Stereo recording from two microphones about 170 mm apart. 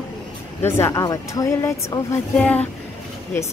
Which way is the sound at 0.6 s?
15° left (ahead or behind).